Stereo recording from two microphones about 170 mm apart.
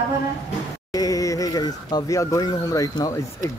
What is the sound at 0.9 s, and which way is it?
Speech, 20° left (ahead or behind).